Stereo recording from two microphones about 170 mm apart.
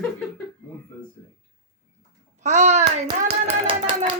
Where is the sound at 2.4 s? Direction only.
45° right (ahead or behind).